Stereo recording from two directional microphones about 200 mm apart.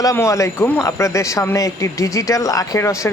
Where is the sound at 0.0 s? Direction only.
15° left (ahead or behind).